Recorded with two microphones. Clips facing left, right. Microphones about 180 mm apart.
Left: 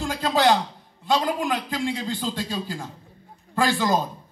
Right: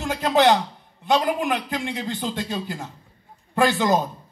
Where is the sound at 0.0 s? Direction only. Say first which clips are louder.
Right 2 dB; 20° right (ahead or behind).